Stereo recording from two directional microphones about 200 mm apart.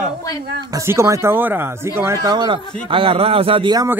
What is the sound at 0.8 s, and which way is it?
Speech, 15° right (ahead or behind).